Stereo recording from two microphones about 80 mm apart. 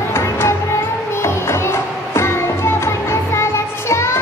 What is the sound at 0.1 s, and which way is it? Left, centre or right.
Music, left.